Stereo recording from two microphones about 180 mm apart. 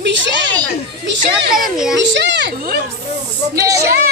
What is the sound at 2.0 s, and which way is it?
Speech, 80° right.